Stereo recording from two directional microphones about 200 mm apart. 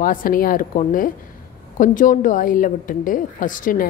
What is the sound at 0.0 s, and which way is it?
A woman's voice, 45° left (ahead or behind).